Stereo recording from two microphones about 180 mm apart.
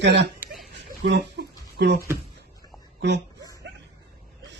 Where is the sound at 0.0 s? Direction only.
75° right (ahead or behind).